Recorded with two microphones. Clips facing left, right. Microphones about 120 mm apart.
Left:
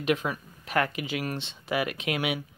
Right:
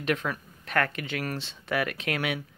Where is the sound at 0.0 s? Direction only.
5° left (ahead or behind).